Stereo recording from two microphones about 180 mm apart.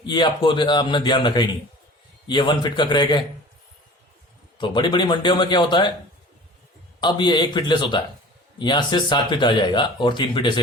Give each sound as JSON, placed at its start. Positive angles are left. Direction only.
{"t": 0.0, "sound": "speech", "side_deg": 25}
{"t": 4.5, "sound": "speech", "side_deg": 25}
{"t": 7.0, "sound": "speech", "side_deg": 25}